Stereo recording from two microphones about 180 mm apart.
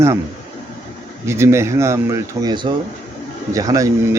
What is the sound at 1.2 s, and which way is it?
Speech, 15° right (ahead or behind).